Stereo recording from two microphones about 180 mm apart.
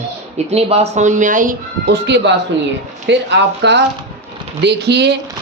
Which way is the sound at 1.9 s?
75° right (ahead or behind).